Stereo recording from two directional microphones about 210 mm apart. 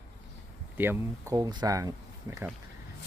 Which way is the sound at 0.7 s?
10° right (ahead or behind).